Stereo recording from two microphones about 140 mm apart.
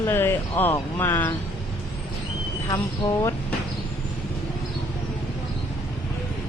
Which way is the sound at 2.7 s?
25° left (ahead or behind).